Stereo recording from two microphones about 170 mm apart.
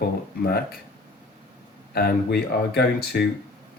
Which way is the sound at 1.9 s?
65° left (ahead or behind).